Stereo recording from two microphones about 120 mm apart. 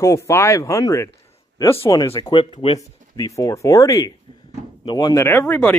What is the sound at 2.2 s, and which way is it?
Speech, 45° left (ahead or behind).